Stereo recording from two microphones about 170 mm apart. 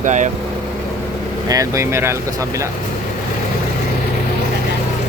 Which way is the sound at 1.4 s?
20° right (ahead or behind).